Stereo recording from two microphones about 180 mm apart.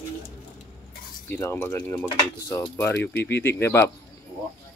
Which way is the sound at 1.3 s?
15° left (ahead or behind).